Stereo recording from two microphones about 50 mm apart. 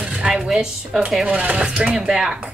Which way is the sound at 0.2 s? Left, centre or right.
Centre.